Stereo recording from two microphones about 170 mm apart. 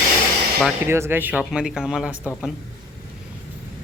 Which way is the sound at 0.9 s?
15° right (ahead or behind).